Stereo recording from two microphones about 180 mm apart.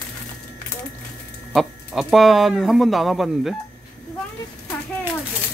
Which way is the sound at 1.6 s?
Centre (ahead or behind).